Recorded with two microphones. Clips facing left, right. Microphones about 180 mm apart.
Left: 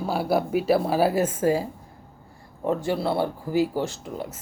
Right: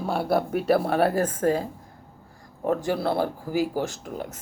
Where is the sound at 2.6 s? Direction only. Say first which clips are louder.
Even; 25° left (ahead or behind).